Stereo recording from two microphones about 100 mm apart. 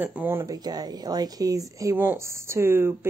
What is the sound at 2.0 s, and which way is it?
Speech, 25° right (ahead or behind).